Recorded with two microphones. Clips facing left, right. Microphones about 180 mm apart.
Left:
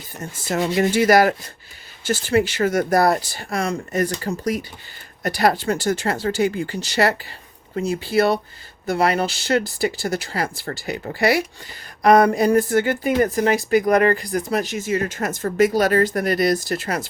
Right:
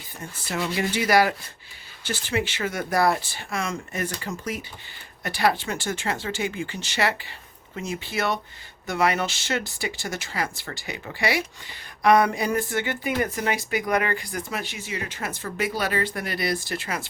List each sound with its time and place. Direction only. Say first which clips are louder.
0.2 s speech: left 6 dB; 40° left (ahead or behind)